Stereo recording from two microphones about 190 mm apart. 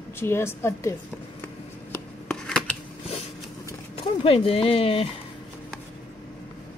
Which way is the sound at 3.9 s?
30° left (ahead or behind).